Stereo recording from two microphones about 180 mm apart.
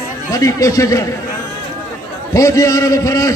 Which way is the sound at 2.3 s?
20° left (ahead or behind).